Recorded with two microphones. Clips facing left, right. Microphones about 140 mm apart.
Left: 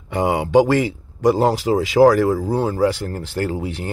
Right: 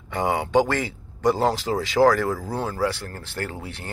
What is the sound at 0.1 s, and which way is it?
Speech, 15° left (ahead or behind).